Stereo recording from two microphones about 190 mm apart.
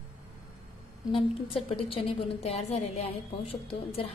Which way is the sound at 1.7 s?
30° left (ahead or behind).